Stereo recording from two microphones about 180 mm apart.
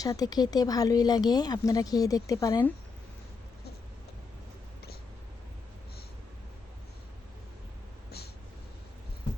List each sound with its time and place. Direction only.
0.0 s speech: 20° left (ahead or behind)